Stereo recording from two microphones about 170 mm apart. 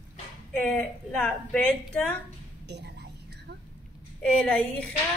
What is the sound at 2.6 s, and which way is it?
Whispering, 80° right.